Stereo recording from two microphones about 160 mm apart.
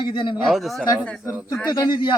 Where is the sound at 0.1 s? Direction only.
30° left (ahead or behind).